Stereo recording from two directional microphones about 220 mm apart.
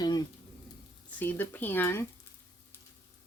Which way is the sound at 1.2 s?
10° left (ahead or behind).